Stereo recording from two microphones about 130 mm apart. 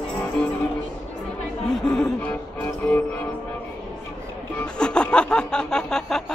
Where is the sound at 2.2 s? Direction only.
15° left (ahead or behind).